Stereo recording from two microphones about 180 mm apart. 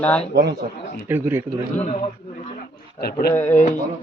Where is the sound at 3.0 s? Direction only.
60° left (ahead or behind).